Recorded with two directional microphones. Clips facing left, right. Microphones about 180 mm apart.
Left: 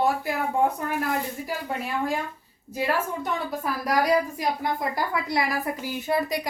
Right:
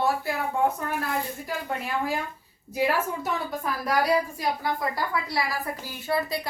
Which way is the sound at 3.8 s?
15° left (ahead or behind).